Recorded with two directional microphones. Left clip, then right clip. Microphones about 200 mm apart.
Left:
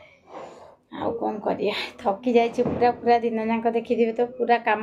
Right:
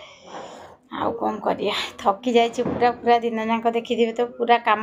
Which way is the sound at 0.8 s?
5° left (ahead or behind).